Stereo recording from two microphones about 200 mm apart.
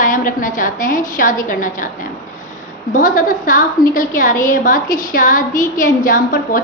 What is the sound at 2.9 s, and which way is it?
A woman's voice, 40° left (ahead or behind).